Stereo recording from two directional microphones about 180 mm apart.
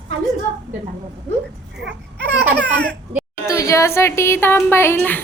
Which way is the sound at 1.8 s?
70° right (ahead or behind).